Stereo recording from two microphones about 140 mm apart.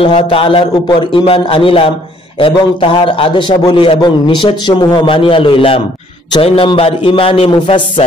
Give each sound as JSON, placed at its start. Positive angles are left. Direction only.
{"t": 0.0, "sound": "a man's voice", "side_deg": 40}